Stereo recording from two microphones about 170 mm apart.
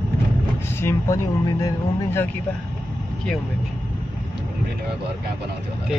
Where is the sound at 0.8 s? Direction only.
15° left (ahead or behind).